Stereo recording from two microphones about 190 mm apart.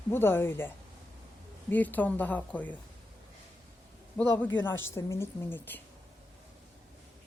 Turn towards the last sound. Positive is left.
turn(degrees=10)  # may be behind; listen again after turning